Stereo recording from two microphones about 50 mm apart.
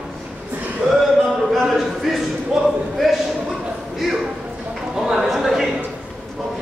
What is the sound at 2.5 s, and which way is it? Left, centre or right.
Speech, centre.